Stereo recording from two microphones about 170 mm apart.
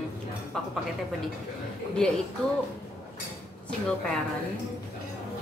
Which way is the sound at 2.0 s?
5° left (ahead or behind).